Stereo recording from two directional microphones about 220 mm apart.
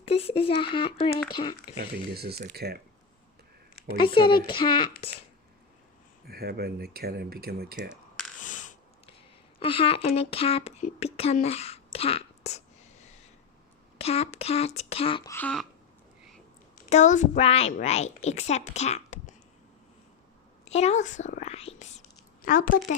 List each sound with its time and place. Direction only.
0.0 s speech: 25° left (ahead or behind)
1.8 s speech: 45° right (ahead or behind)
3.8 s speech: 20° left (ahead or behind)
6.2 s speech: 45° right (ahead or behind)
7.8 s a sound: centre (ahead or behind)
8.4 s snort: 35° left (ahead or behind)
9.6 s a woman's voice: 25° left (ahead or behind)
15.3 s throat clearing: 5° left (ahead or behind)
16.9 s a child's voice: 35° left (ahead or behind)
20.7 s a child's voice: 30° left (ahead or behind)
22.4 s a child's voice: 40° left (ahead or behind)